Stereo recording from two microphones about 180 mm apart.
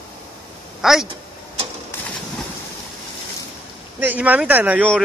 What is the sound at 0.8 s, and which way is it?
Speech, centre (ahead or behind).